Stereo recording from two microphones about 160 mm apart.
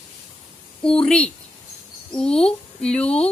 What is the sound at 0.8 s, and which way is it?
A woman's voice, 5° left (ahead or behind).